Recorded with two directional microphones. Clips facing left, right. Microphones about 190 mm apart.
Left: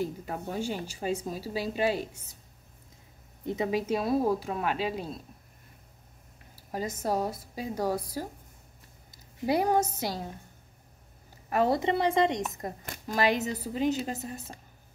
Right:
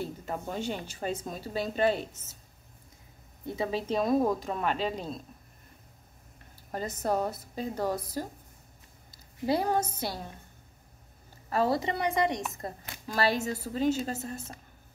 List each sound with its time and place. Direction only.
0.0 s speech: 10° left (ahead or behind)
3.4 s speech: 15° left (ahead or behind)
3.8 s speech: 5° left (ahead or behind)
6.5 s speech: 10° left (ahead or behind)
9.5 s speech: 15° left (ahead or behind)
11.5 s a woman's voice: 20° left (ahead or behind)